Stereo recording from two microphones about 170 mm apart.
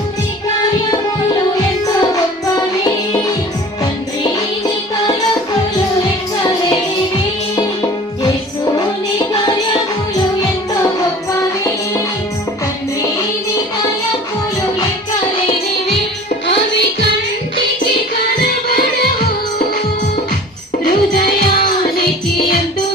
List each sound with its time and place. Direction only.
0.6 s music: 25° left (ahead or behind)
8.7 s music: 25° left (ahead or behind)